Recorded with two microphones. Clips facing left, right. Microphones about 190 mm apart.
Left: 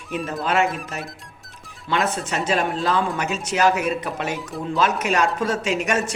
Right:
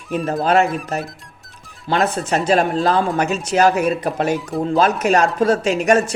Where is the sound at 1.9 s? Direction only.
40° right (ahead or behind).